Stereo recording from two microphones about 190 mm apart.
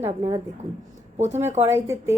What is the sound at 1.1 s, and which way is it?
Speech, 35° right (ahead or behind).